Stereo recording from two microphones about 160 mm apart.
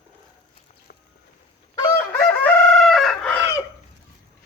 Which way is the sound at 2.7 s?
Centre (ahead or behind).